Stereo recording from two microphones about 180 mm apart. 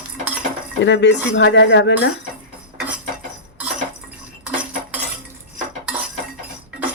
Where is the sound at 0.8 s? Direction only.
80° left.